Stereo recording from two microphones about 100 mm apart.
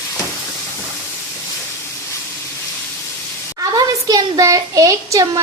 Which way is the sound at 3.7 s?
35° right (ahead or behind).